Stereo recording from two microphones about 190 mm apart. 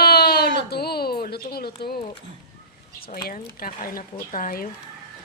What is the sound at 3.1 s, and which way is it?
Speech, 50° left (ahead or behind).